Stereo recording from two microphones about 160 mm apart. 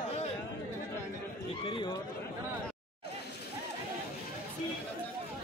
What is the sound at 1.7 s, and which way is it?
Speech, 30° left (ahead or behind).